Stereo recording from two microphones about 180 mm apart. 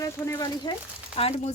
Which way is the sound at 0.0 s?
20° left (ahead or behind).